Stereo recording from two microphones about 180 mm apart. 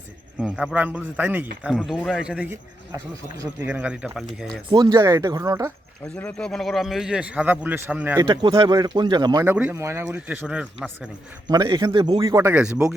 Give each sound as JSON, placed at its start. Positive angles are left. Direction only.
{"t": 0.3, "sound": "a man's voice", "side_deg": -5}
{"t": 3.7, "sound": "a man's voice", "side_deg": -5}
{"t": 4.7, "sound": "speech", "side_deg": -25}
{"t": 6.1, "sound": "a man's voice", "side_deg": 5}
{"t": 8.2, "sound": "speech", "side_deg": -25}
{"t": 11.4, "sound": "a man's voice", "side_deg": -25}